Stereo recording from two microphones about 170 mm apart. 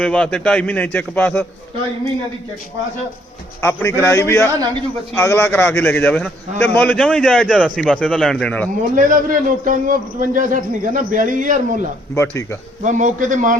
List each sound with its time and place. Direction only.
0.0 s a man's voice: 5° left (ahead or behind)
3.6 s a man's voice: 15° left (ahead or behind)
9.0 s a man's voice: 50° right (ahead or behind)
12.1 s a man's voice: 15° left (ahead or behind)
12.8 s a man's voice: 45° right (ahead or behind)